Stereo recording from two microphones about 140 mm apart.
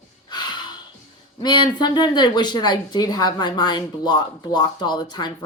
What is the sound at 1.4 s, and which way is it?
A woman's voice, 30° left (ahead or behind).